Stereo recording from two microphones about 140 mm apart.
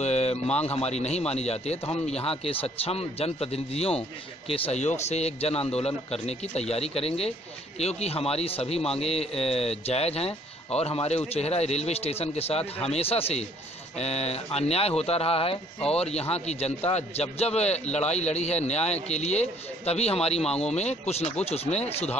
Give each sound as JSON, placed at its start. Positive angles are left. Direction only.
{"t": 0.0, "sound": "speech", "side_deg": 50}
{"t": 20.4, "sound": "speech", "side_deg": 5}
{"t": 20.7, "sound": "speech", "side_deg": 50}